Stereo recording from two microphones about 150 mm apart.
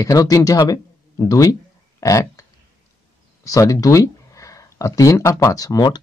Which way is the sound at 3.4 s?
20° left (ahead or behind).